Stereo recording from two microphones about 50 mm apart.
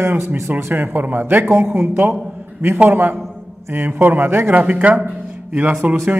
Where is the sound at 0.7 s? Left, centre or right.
Right.